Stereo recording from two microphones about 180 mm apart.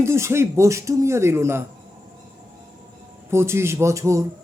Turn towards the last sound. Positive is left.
turn(degrees=-15)  # may be behind; listen again after turning